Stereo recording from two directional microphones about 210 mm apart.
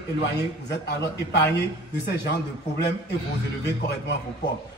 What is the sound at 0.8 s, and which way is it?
A man's voice, 55° left (ahead or behind).